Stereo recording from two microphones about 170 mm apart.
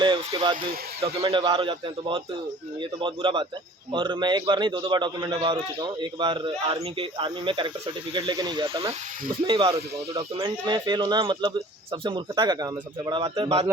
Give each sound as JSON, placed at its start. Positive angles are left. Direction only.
{"t": 0.0, "sound": "speech", "side_deg": -25}